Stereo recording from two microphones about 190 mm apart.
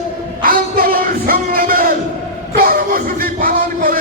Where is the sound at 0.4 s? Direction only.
50° right (ahead or behind).